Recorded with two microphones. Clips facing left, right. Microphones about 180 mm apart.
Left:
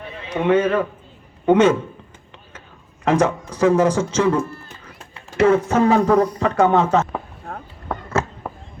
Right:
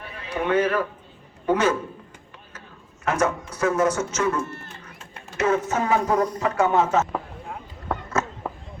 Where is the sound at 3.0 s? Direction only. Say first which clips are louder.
Left 5 dB; 30° left (ahead or behind).